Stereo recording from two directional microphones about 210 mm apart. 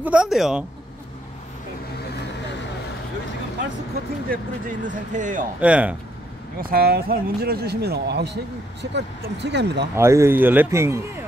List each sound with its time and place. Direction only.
0.0 s speech: 5° right (ahead or behind)
4.3 s speech: 40° right (ahead or behind)
5.6 s a man's voice: 5° right (ahead or behind)
6.6 s speech: 45° right (ahead or behind)
9.9 s a man's voice: 15° right (ahead or behind)